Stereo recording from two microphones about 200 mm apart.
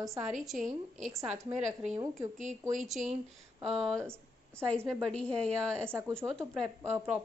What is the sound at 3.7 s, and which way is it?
A woman's voice, centre (ahead or behind).